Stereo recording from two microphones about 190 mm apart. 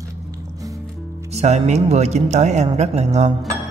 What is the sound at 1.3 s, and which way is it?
Speech, 35° right (ahead or behind).